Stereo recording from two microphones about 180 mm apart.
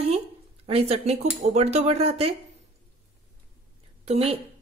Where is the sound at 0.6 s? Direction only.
35° right (ahead or behind).